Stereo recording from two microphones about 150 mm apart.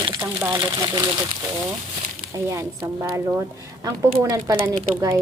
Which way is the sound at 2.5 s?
20° right (ahead or behind).